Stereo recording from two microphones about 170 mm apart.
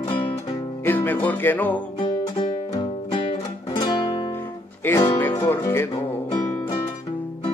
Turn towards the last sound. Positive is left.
turn(degrees=15)  # may be behind; listen again after turning